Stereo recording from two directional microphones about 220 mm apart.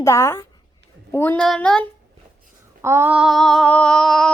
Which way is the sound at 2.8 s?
10° right (ahead or behind).